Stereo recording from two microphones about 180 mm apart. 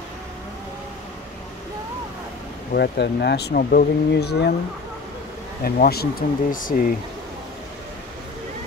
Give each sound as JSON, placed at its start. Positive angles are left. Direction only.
{"t": 2.7, "sound": "speech", "side_deg": 60}
{"t": 5.6, "sound": "speech", "side_deg": 60}